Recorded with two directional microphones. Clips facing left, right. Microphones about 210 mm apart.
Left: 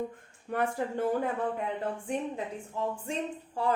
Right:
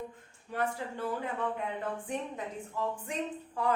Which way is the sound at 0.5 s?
55° left (ahead or behind).